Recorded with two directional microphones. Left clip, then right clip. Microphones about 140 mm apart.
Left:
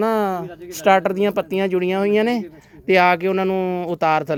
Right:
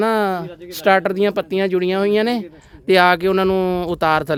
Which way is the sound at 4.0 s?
30° right (ahead or behind).